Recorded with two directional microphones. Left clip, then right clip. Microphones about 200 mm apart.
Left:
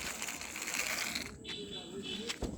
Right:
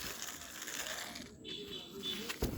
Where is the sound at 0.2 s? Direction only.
10° left (ahead or behind).